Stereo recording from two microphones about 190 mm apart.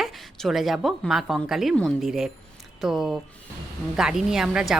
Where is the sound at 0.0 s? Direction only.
Centre (ahead or behind).